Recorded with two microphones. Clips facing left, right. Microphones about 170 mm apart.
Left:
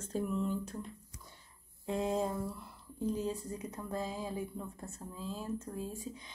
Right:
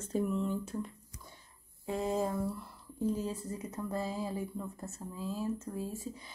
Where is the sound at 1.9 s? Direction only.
Centre (ahead or behind).